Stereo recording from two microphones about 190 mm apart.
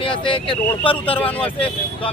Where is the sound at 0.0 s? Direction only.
25° left (ahead or behind).